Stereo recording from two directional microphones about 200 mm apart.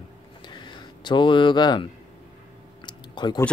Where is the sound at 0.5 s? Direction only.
20° left (ahead or behind).